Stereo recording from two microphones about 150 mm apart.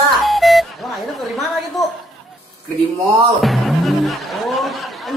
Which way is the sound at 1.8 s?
Centre (ahead or behind).